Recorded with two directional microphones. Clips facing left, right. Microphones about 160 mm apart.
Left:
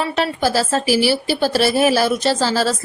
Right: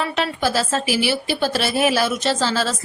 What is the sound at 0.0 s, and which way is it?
Speech, 40° left (ahead or behind).